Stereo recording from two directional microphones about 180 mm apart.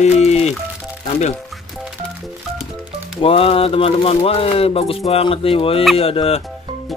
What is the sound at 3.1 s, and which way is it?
Speech, 30° left (ahead or behind).